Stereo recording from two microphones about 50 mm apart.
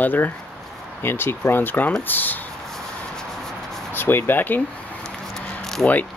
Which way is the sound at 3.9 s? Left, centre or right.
Left.